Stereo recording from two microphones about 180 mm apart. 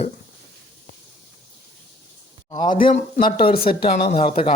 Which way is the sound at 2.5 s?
25° left (ahead or behind).